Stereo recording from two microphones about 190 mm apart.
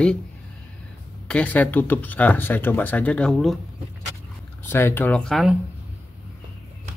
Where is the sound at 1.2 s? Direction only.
5° left (ahead or behind).